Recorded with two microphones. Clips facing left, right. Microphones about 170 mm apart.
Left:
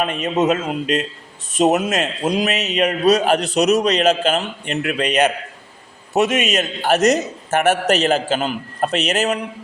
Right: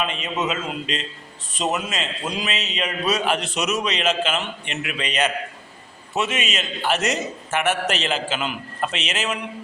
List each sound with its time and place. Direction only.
0.0 s a man's voice: 45° left (ahead or behind)
2.6 s speech: 65° left (ahead or behind)
2.8 s a man's voice: 40° left (ahead or behind)
6.1 s a man's voice: 45° left (ahead or behind)